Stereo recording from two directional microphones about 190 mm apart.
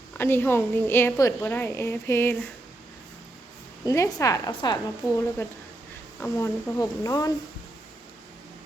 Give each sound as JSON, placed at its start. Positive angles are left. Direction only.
{"t": 0.2, "sound": "a woman's voice", "side_deg": 10}
{"t": 3.8, "sound": "a woman's voice", "side_deg": 15}